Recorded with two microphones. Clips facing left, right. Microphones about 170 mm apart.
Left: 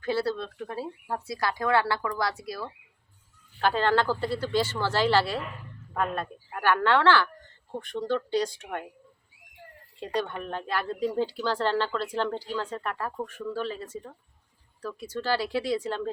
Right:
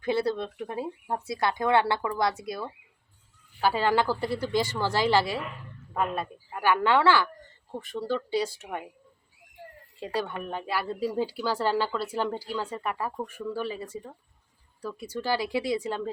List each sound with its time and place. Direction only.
0.0 s speech: 15° right (ahead or behind)
3.6 s speech: 10° right (ahead or behind)
10.0 s speech: 5° right (ahead or behind)